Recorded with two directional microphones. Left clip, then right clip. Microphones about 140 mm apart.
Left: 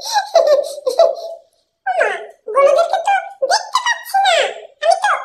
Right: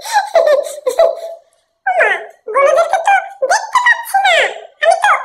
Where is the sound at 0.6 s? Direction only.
5° left (ahead or behind).